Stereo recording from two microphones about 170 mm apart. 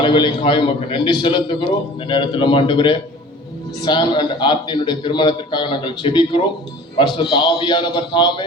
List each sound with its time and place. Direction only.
0.0 s a man's voice: 30° left (ahead or behind)